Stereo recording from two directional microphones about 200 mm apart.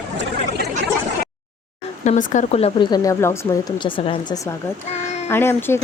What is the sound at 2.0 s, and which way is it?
Speech, 35° left (ahead or behind).